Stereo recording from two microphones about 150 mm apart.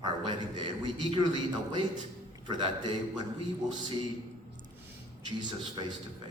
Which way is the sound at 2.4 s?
30° right (ahead or behind).